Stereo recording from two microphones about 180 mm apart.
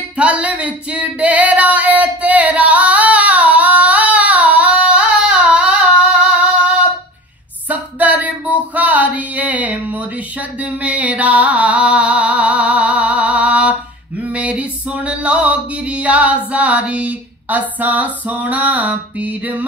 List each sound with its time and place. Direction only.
0.2 s singing: 5° right (ahead or behind)
7.6 s singing: 10° right (ahead or behind)